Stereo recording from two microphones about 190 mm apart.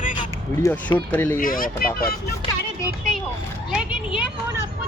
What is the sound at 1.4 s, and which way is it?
Speech, 45° left (ahead or behind).